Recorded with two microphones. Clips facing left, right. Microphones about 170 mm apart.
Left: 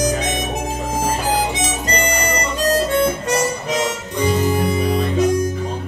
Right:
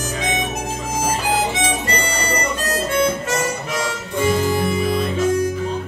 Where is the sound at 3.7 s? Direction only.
20° left (ahead or behind).